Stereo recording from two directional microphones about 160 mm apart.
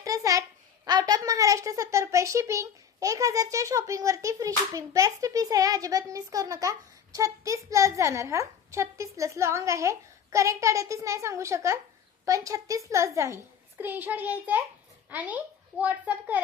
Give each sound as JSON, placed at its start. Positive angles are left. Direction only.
{"t": 0.0, "sound": "babbling", "side_deg": -20}
{"t": 0.9, "sound": "a woman's voice", "side_deg": -25}